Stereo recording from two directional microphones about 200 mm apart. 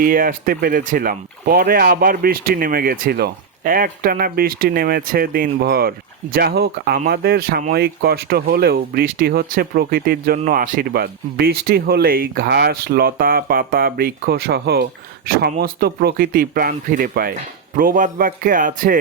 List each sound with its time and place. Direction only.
0.0 s speech: 45° right (ahead or behind)